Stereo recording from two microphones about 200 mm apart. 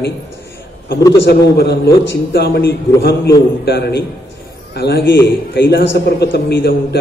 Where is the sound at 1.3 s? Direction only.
50° left (ahead or behind).